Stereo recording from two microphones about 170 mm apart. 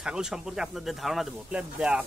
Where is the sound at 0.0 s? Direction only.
5° right (ahead or behind).